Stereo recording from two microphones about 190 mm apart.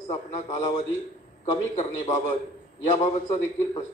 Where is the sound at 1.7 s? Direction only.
40° left (ahead or behind).